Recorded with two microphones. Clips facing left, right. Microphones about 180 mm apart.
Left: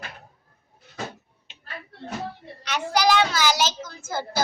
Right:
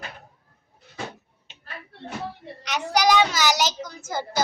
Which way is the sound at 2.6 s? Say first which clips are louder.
Even; 15° right (ahead or behind).